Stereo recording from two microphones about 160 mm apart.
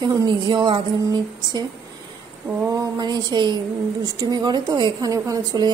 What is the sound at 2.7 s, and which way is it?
A woman's voice, 25° right (ahead or behind).